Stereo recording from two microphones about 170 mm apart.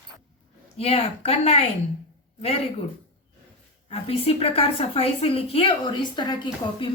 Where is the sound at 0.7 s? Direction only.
35° left (ahead or behind).